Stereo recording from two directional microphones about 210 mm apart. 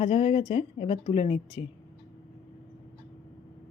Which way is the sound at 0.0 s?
25° left (ahead or behind).